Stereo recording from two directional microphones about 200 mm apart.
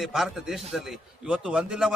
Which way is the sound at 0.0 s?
Centre (ahead or behind).